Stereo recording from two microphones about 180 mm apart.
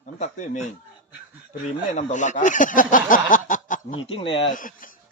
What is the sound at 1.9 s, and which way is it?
Speech, 45° left (ahead or behind).